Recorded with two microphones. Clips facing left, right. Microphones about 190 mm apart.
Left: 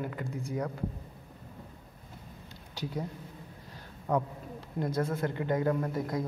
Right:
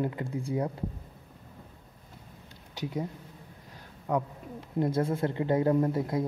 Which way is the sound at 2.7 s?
20° right (ahead or behind).